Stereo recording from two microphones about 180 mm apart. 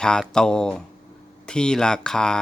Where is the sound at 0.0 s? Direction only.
5° left (ahead or behind).